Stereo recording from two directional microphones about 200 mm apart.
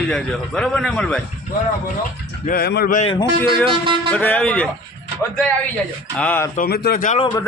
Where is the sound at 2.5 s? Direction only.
50° left (ahead or behind).